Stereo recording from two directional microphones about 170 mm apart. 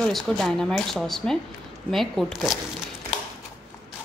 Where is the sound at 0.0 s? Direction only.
5° left (ahead or behind).